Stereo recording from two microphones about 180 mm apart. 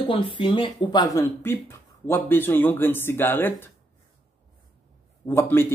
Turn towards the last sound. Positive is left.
turn(degrees=10)  # may be behind; listen again after turning